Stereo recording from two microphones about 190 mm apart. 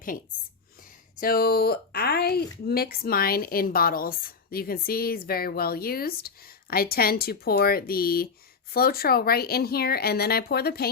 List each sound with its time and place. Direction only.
1.2 s speech: 50° left (ahead or behind)